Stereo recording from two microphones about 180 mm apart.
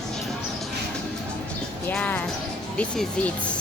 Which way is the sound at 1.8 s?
10° left (ahead or behind).